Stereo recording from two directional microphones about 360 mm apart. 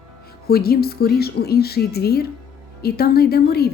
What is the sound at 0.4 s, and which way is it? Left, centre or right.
Speech, left.